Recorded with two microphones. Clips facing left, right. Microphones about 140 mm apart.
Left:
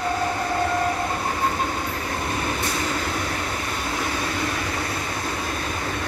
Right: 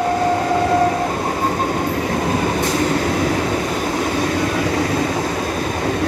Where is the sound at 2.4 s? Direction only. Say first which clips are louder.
Right 8 dB; 45° right (ahead or behind).